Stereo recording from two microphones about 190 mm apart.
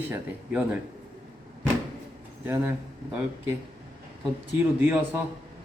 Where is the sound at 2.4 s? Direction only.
10° right (ahead or behind).